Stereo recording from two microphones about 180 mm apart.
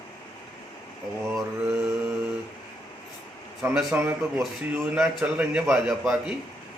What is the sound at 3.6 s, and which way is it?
A man's voice, 5° right (ahead or behind).